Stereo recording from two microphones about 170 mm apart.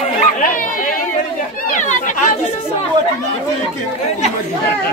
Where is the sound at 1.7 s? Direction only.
45° left (ahead or behind).